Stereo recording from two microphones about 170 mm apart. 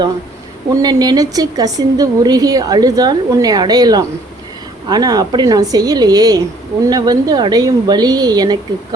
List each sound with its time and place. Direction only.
0.7 s a woman's voice: 20° right (ahead or behind)